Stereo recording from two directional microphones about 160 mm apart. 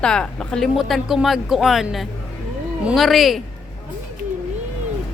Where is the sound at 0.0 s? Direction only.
5° left (ahead or behind).